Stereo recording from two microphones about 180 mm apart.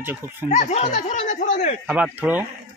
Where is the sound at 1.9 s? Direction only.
10° right (ahead or behind).